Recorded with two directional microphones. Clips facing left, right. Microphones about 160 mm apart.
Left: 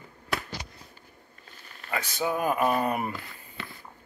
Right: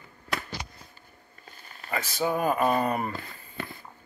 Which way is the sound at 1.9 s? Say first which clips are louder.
Right 1 dB; centre (ahead or behind).